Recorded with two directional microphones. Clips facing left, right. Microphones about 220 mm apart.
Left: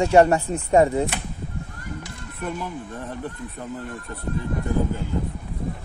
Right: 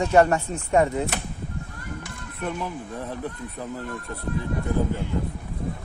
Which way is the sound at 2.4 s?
Centre (ahead or behind).